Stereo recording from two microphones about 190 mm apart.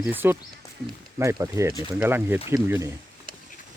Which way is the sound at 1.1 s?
15° right (ahead or behind).